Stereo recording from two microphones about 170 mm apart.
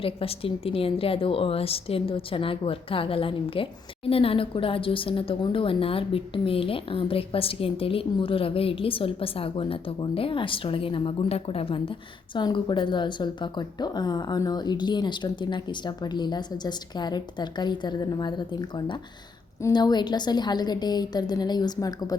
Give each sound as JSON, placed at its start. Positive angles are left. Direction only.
{"t": 0.0, "sound": "a woman's voice", "side_deg": 35}
{"t": 19.6, "sound": "a woman's voice", "side_deg": 25}